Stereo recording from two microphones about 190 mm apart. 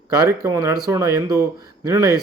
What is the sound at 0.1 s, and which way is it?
A man's voice, 20° right (ahead or behind).